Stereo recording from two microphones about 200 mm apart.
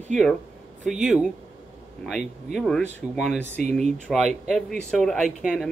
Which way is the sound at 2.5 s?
5° left (ahead or behind).